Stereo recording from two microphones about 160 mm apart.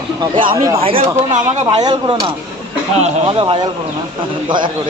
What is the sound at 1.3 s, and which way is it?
Speech, 45° right (ahead or behind).